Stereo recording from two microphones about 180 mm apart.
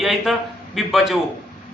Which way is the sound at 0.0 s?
Centre (ahead or behind).